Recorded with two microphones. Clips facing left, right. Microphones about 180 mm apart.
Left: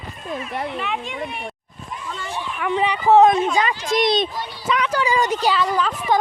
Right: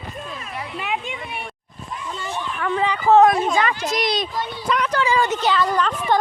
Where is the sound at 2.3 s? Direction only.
10° left (ahead or behind).